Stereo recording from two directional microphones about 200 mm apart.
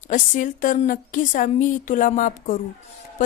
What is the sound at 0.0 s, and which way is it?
Speech, 40° left (ahead or behind).